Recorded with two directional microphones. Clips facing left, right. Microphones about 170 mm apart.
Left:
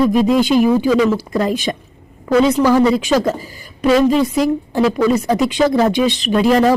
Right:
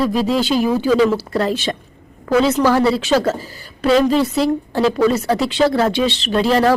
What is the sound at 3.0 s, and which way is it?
A woman's voice, 15° left (ahead or behind).